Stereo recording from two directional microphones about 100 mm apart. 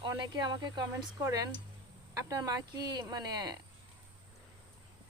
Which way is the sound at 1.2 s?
35° right (ahead or behind).